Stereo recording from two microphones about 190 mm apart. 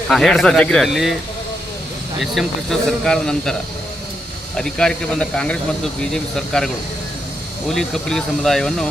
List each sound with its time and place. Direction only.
0.1 s speech: centre (ahead or behind)
2.2 s speech: centre (ahead or behind)
4.5 s speech: 5° left (ahead or behind)
7.7 s speech: centre (ahead or behind)